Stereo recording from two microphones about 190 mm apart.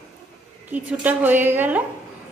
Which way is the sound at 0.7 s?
10° right (ahead or behind).